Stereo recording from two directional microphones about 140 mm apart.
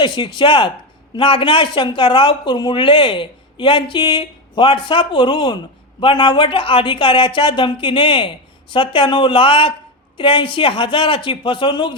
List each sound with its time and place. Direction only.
0.0 s speech: 35° left (ahead or behind)